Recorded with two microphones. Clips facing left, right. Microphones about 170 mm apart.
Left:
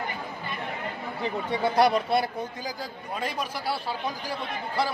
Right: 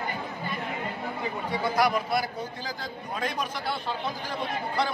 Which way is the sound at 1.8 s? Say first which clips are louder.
Left 4 dB; 30° left (ahead or behind).